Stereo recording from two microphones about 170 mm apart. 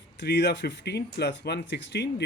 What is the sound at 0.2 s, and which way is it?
Speech, 85° left.